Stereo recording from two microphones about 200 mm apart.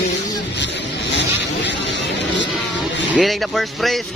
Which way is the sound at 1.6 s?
60° left (ahead or behind).